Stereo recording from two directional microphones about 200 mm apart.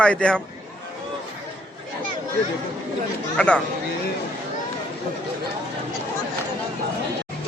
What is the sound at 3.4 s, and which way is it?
Speech, 5° left (ahead or behind).